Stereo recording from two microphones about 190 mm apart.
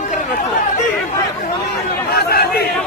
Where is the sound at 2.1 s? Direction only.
55° left (ahead or behind).